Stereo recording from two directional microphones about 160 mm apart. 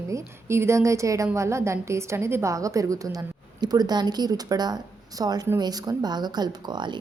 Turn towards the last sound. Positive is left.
turn(degrees=-25)  # may be behind; listen again after turning